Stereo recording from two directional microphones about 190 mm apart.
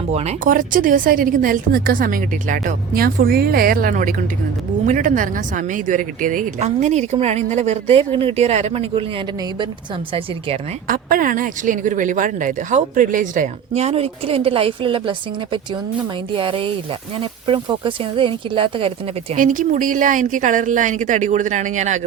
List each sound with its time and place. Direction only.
0.1 s a woman's voice: 35° right (ahead or behind)
10.8 s speech: 50° right (ahead or behind); by 15.1 s 25° right (ahead or behind)
16.3 s speech: 25° right (ahead or behind)
19.4 s a woman's voice: 40° right (ahead or behind)